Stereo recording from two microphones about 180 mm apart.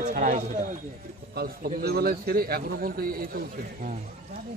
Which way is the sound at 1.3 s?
55° right (ahead or behind).